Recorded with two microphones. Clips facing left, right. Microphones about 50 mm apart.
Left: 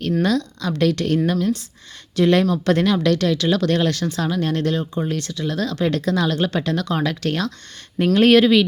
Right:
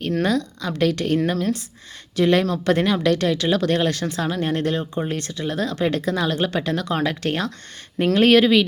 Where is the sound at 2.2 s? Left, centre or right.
Centre.